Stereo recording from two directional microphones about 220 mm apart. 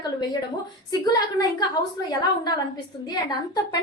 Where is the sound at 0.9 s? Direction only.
15° left (ahead or behind).